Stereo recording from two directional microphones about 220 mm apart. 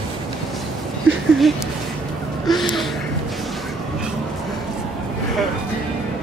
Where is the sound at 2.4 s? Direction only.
Centre (ahead or behind).